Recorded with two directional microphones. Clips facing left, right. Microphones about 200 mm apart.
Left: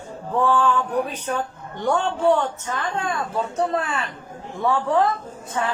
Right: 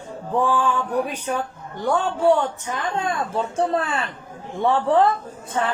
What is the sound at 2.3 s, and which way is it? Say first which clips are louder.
Speech: even; 15° right (ahead or behind).